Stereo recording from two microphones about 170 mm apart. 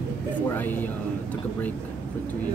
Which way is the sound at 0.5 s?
10° left (ahead or behind).